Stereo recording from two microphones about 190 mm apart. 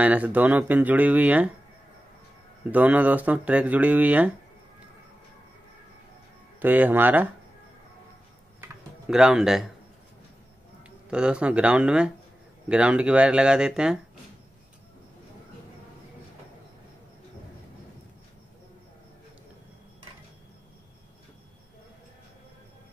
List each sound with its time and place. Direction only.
0.0 s speech: 5° right (ahead or behind)
2.7 s speech: 10° right (ahead or behind)
6.6 s speech: 10° right (ahead or behind)
9.1 s speech: 5° right (ahead or behind)
11.1 s speech: 5° right (ahead or behind)